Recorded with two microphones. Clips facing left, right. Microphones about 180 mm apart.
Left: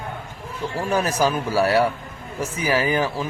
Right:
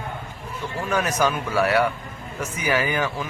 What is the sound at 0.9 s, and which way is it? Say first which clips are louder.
Speech: left 1 dB; 30° left (ahead or behind).